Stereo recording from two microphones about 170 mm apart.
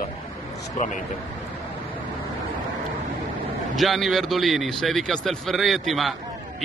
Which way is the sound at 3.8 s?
Centre (ahead or behind).